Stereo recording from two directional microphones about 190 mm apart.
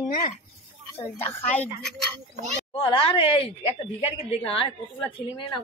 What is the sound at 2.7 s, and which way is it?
Speech, 30° left (ahead or behind).